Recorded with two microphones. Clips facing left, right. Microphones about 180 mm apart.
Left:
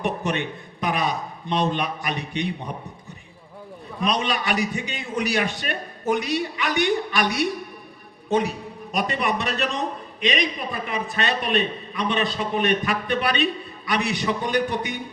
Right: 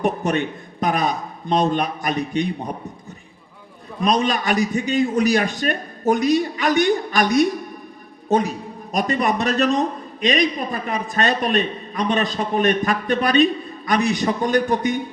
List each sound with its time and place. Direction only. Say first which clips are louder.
0.0 s a man's voice: right 5 dB; 40° right (ahead or behind)
4.0 s a man's voice: right 5 dB; 40° right (ahead or behind)
8.9 s a man's voice: right 4 dB; 40° right (ahead or behind)